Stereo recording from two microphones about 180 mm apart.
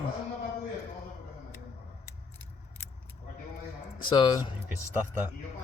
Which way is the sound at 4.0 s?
25° left (ahead or behind).